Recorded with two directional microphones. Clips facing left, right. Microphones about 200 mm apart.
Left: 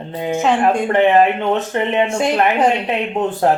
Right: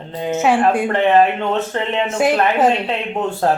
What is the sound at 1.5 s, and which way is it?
Speech, 15° left (ahead or behind).